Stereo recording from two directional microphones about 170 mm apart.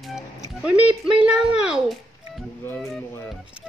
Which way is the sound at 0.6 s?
5° right (ahead or behind).